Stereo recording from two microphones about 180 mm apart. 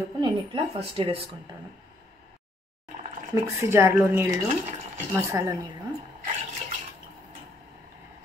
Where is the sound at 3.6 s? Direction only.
15° right (ahead or behind).